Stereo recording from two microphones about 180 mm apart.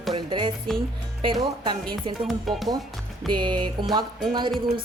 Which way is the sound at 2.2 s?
Centre (ahead or behind).